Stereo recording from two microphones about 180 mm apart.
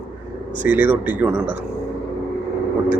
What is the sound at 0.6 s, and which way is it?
Speech, 10° right (ahead or behind).